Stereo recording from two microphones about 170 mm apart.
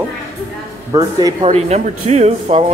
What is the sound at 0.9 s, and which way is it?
Speech, 15° right (ahead or behind).